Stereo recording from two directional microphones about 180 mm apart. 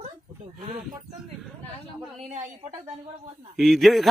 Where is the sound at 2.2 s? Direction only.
45° right (ahead or behind).